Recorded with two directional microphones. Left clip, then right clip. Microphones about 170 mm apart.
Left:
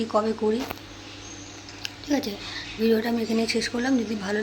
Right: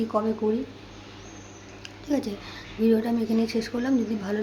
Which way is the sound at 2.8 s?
5° right (ahead or behind).